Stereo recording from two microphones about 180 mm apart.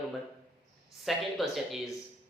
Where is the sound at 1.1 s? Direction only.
Centre (ahead or behind).